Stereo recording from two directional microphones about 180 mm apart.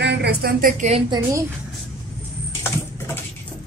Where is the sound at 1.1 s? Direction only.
20° right (ahead or behind).